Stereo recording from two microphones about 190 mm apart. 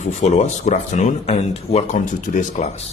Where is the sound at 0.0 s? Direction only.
35° left (ahead or behind).